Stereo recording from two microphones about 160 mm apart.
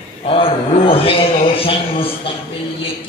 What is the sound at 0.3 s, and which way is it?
Speech, 35° left (ahead or behind).